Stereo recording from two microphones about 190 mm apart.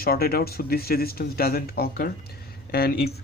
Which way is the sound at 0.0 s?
55° left (ahead or behind).